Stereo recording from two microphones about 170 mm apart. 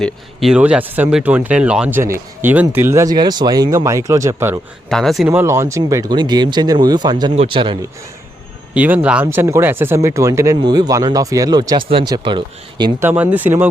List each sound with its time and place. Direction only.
0.0 s speech: centre (ahead or behind)
4.9 s speech: centre (ahead or behind)
5.3 s speech: 15° right (ahead or behind)
8.7 s speech: 10° right (ahead or behind); by 12.9 s 25° right (ahead or behind)
13.0 s speech: 10° right (ahead or behind)